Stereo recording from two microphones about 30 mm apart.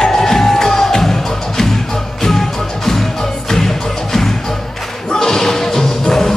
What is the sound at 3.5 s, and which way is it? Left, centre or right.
Music, centre.